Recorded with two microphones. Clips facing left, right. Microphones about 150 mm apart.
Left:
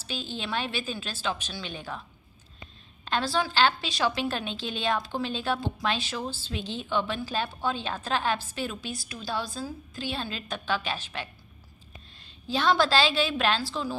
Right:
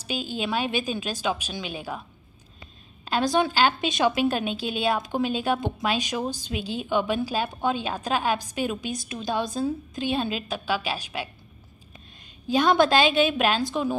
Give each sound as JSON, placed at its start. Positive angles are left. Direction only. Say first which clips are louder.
{"t": 0.0, "sound": "a woman's voice", "louder": "right 6 dB", "side_deg": -10}
{"t": 3.1, "sound": "a woman's voice", "louder": "right 5 dB", "side_deg": -15}
{"t": 12.4, "sound": "a woman's voice", "louder": "right 4 dB", "side_deg": -15}